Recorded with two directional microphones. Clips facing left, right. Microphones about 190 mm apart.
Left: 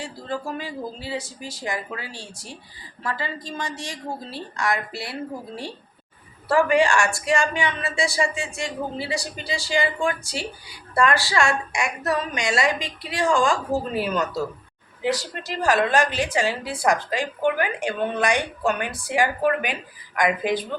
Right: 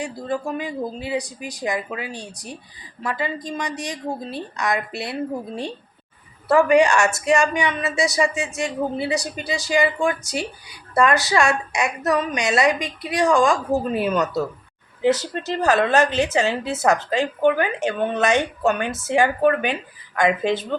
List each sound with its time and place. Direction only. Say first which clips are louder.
0.0 s a woman's voice: right 4 dB; 15° right (ahead or behind)
6.7 s a woman's voice: right 4 dB; 20° right (ahead or behind)